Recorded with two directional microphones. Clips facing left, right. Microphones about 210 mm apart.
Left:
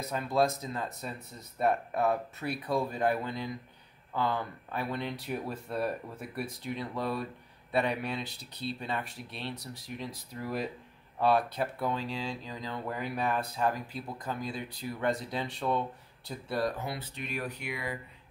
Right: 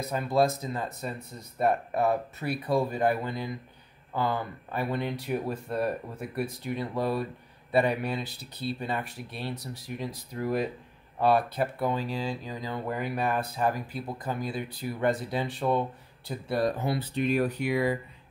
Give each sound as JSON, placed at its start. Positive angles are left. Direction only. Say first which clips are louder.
{"t": 0.0, "sound": "speech", "louder": "right 3 dB", "side_deg": -5}
{"t": 16.8, "sound": "speech", "louder": "right 10 dB", "side_deg": -30}